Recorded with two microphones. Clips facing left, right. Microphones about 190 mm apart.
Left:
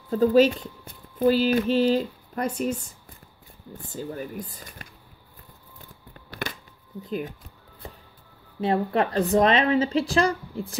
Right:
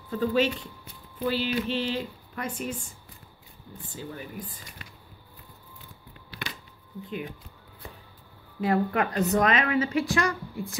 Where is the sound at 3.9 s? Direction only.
40° left (ahead or behind).